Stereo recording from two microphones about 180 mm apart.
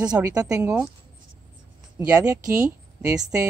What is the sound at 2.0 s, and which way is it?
Speech, 20° right (ahead or behind).